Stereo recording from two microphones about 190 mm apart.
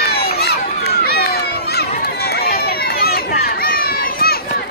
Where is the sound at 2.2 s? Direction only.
55° left (ahead or behind).